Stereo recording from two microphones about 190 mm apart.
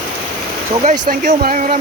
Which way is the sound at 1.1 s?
50° right (ahead or behind).